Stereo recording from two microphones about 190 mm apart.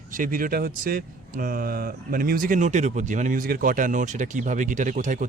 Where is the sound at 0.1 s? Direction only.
45° right (ahead or behind).